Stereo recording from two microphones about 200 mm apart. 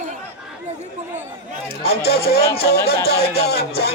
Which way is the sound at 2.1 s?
50° left (ahead or behind).